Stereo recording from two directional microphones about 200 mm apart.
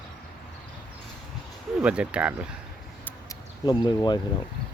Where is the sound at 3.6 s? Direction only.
20° left (ahead or behind).